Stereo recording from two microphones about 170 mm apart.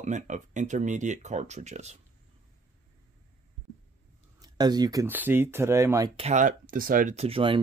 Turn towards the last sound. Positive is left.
turn(degrees=-30)  # may be behind; listen again after turning